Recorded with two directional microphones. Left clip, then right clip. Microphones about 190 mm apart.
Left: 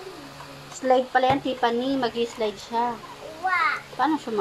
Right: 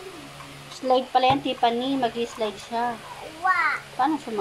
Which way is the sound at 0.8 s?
5° left (ahead or behind).